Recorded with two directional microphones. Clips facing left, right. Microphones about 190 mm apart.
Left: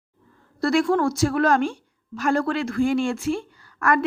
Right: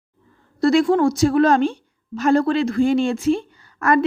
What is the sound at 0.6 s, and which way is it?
A woman's voice, 20° right (ahead or behind).